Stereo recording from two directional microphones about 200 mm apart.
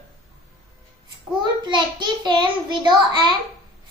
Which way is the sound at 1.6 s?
20° right (ahead or behind).